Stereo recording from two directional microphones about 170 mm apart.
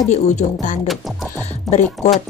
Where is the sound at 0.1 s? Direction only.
45° left (ahead or behind).